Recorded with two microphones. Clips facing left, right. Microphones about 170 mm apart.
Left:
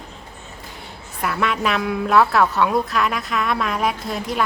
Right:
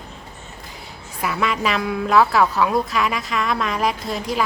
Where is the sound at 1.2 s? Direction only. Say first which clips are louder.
Even; centre (ahead or behind).